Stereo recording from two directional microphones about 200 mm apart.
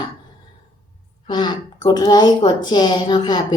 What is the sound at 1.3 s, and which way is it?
Speech, 20° left (ahead or behind).